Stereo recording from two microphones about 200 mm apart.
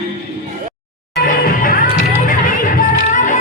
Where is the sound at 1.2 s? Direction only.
50° left (ahead or behind).